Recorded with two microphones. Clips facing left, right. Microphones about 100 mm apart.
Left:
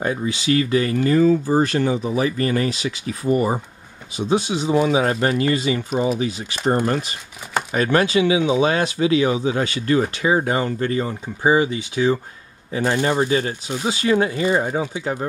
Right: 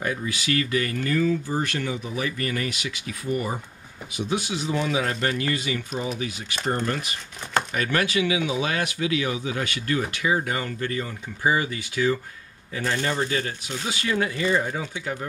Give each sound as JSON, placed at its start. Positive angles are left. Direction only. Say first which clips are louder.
{"t": 0.0, "sound": "speech", "louder": "left 6 dB", "side_deg": 25}